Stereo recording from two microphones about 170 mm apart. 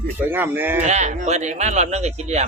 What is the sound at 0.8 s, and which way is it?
Speech, 45° right (ahead or behind).